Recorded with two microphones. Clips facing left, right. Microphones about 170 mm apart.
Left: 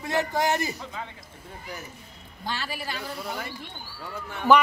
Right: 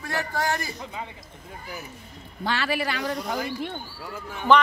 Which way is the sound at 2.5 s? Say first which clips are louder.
Right 7 dB; 75° right (ahead or behind).